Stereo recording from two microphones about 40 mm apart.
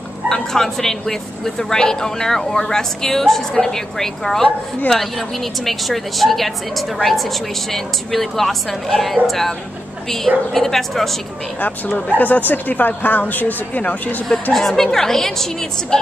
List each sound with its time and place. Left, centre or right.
0.3 s a woman's voice: centre
12.2 s speech: left
13.8 s speech: left
14.5 s speech: centre